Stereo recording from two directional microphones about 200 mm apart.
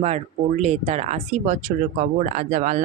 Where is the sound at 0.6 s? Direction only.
35° right (ahead or behind).